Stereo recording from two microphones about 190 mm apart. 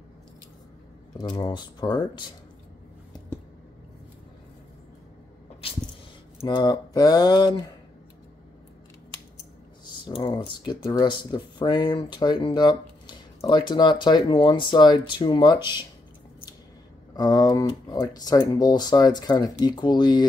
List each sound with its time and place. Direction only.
1.1 s speech: 20° left (ahead or behind)
5.6 s a sound: 30° left (ahead or behind)
6.4 s speech: 25° left (ahead or behind)
10.0 s speech: 25° left (ahead or behind)
17.1 s speech: 20° left (ahead or behind)